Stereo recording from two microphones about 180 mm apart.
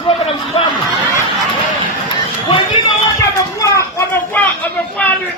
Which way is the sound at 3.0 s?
20° left (ahead or behind).